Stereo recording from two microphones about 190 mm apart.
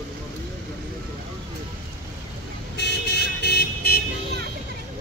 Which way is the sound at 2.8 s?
65° left (ahead or behind).